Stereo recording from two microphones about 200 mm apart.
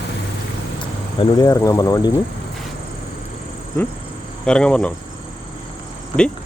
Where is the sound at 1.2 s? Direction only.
20° left (ahead or behind).